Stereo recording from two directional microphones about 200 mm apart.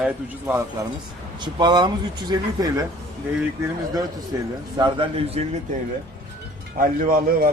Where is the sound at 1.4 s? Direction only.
20° right (ahead or behind).